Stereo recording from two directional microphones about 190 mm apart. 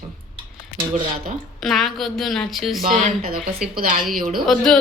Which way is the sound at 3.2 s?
50° right (ahead or behind).